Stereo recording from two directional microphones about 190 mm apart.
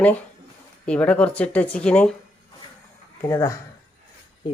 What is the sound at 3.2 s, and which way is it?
Speech, 15° left (ahead or behind).